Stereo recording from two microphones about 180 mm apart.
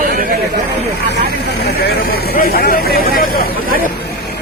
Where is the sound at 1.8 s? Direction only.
55° left (ahead or behind).